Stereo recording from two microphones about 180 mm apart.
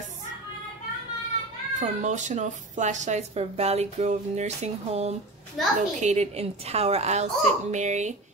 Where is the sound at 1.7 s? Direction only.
45° right (ahead or behind).